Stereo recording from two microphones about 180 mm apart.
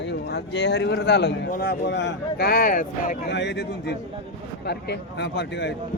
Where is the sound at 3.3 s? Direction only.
75° left (ahead or behind).